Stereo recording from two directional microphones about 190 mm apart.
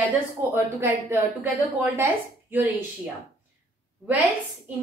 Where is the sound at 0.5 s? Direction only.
10° right (ahead or behind).